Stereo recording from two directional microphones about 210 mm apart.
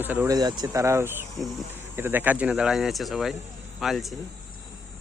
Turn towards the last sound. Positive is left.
turn(degrees=0)  # may be behind; listen again after turning